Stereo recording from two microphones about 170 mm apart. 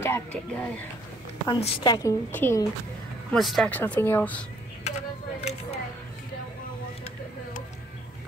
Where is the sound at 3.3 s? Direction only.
Centre (ahead or behind).